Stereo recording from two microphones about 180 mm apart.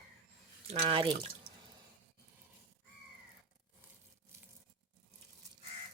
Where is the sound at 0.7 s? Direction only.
30° right (ahead or behind).